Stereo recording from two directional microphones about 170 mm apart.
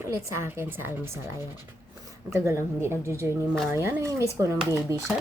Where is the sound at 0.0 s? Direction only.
15° right (ahead or behind).